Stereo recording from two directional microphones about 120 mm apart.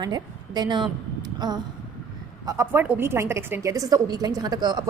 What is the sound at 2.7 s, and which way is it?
A woman's voice, 15° right (ahead or behind).